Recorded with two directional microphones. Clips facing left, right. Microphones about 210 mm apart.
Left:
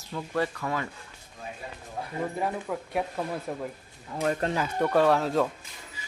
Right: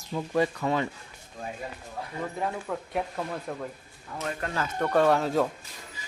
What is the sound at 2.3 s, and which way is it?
Speech, 5° left (ahead or behind).